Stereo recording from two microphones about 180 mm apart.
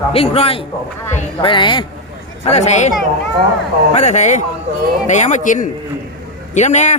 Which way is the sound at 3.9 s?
40° left (ahead or behind).